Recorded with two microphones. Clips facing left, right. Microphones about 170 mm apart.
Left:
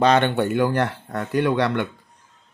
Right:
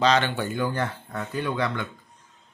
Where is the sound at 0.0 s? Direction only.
55° left (ahead or behind).